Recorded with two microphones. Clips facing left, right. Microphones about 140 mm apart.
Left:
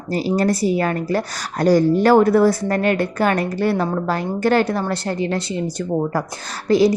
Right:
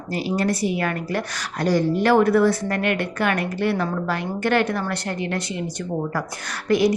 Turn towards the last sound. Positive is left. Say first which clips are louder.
# left 4 dB
turn(degrees=30)  # may be behind; listen again after turning